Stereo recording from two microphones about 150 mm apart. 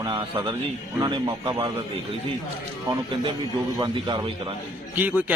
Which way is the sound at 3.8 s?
30° right (ahead or behind).